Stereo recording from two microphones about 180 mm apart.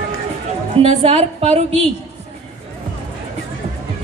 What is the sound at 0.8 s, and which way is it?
A woman's voice, 35° right (ahead or behind).